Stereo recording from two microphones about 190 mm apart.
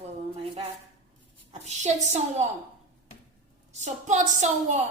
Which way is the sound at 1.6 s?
35° right (ahead or behind).